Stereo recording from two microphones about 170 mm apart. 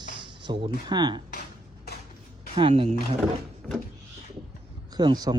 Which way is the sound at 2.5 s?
35° right (ahead or behind).